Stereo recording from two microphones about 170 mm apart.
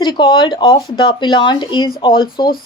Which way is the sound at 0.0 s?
25° left (ahead or behind).